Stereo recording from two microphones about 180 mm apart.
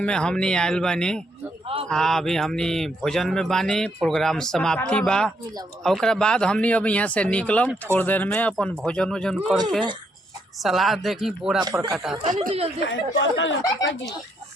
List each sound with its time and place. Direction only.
0.0 s speech: 5° left (ahead or behind)
1.6 s a sound: 30° right (ahead or behind)
1.9 s speech: 5° left (ahead or behind)
10.6 s speech: centre (ahead or behind)
11.6 s speech: 20° right (ahead or behind)
12.8 s speech: 80° left
13.8 s speech: 20° left (ahead or behind)